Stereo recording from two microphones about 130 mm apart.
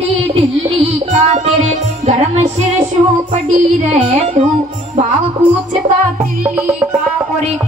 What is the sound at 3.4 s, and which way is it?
Speech, 65° right (ahead or behind).